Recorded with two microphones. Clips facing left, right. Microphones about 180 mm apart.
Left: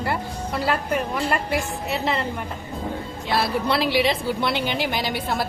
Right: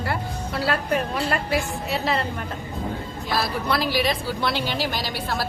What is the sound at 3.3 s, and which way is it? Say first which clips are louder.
A woman's voice: left 2 dB; 25° left (ahead or behind).